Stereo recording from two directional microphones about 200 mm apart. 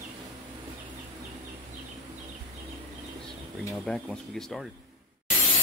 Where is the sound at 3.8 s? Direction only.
Centre (ahead or behind).